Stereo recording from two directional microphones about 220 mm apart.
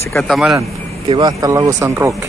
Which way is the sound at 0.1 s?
Centre (ahead or behind).